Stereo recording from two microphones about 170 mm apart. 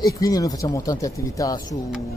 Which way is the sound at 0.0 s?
20° left (ahead or behind).